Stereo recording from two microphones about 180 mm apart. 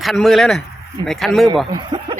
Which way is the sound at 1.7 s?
25° right (ahead or behind).